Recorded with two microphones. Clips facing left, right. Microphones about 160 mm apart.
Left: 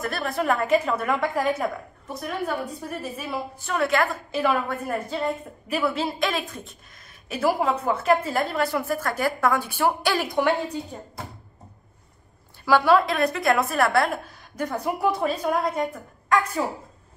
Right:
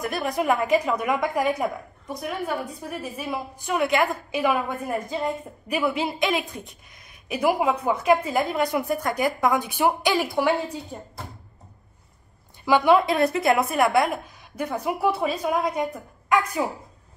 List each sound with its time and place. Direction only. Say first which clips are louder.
0.0 s a woman's voice: right 1 dB; 15° right (ahead or behind)
12.6 s a woman's voice: right 1 dB; 15° right (ahead or behind)